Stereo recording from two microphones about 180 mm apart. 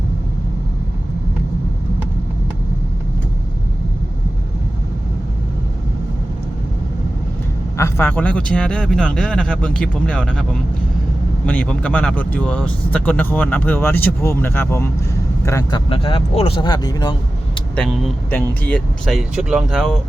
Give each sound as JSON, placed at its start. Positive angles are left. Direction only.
{"t": 7.8, "sound": "speech", "side_deg": 15}
{"t": 15.9, "sound": "speech", "side_deg": 30}
{"t": 17.7, "sound": "speech", "side_deg": 0}